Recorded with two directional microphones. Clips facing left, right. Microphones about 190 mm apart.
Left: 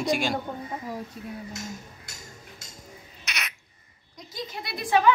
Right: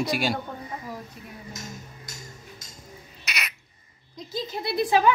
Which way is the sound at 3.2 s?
Centre (ahead or behind).